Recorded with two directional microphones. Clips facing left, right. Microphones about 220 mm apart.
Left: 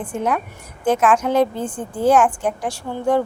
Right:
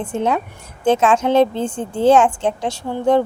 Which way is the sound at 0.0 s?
25° right (ahead or behind).